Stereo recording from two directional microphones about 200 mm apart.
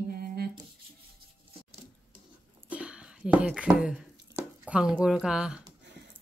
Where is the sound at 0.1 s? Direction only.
50° right (ahead or behind).